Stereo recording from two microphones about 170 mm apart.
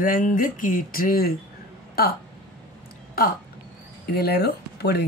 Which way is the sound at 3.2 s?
60° left (ahead or behind).